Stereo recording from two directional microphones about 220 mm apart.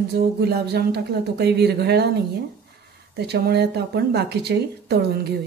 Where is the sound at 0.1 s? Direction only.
45° right (ahead or behind).